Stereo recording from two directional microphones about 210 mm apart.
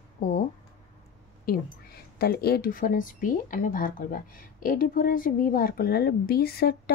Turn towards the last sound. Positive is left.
turn(degrees=50)  # may be behind; listen again after turning